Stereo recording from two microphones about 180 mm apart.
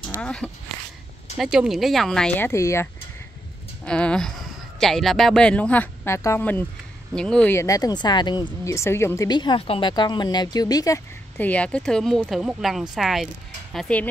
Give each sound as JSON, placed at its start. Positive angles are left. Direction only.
{"t": 0.2, "sound": "speech", "side_deg": 5}
{"t": 3.8, "sound": "speech", "side_deg": 5}